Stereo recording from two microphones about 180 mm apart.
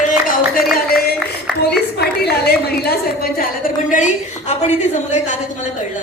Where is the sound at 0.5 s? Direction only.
55° left (ahead or behind).